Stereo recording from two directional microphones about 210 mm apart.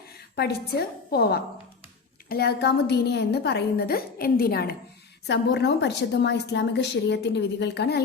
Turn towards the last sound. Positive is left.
turn(degrees=50)  # may be behind; listen again after turning